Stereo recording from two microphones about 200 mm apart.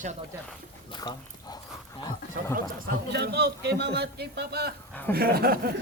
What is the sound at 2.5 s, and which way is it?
A man's voice, 50° right (ahead or behind).